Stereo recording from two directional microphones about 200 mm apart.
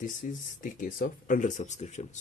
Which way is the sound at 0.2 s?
40° left (ahead or behind).